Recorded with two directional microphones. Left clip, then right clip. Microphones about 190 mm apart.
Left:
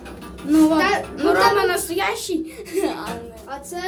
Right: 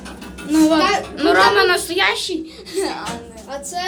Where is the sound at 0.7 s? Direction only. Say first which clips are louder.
Right 3 dB; 10° left (ahead or behind).